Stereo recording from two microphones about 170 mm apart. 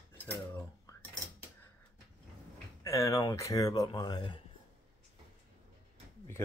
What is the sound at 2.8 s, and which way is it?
Speech, 20° left (ahead or behind).